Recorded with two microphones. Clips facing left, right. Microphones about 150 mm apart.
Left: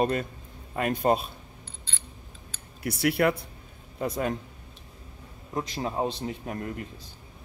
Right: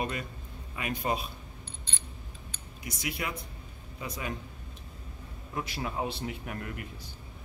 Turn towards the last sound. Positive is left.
turn(degrees=30)  # may be behind; listen again after turning